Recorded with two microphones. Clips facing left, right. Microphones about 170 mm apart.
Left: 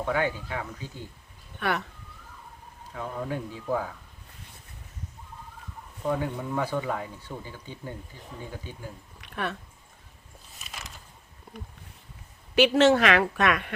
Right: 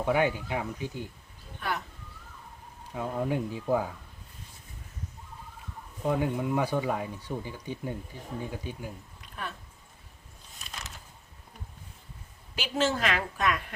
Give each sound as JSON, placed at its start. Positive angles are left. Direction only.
{"t": 0.0, "sound": "speech", "side_deg": -15}
{"t": 1.5, "sound": "speech", "side_deg": 70}
{"t": 2.9, "sound": "speech", "side_deg": -15}
{"t": 6.1, "sound": "speech", "side_deg": -15}
{"t": 9.2, "sound": "a sound", "side_deg": 70}
{"t": 10.6, "sound": "a sound", "side_deg": 0}
{"t": 12.5, "sound": "a woman's voice", "side_deg": 70}